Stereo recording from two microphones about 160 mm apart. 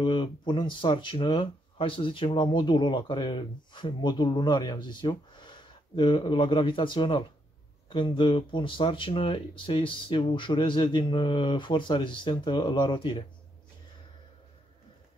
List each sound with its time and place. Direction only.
0.0 s speech: 30° left (ahead or behind)